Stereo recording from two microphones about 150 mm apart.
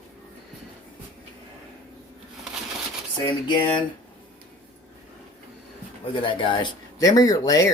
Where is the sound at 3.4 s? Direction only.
30° left (ahead or behind).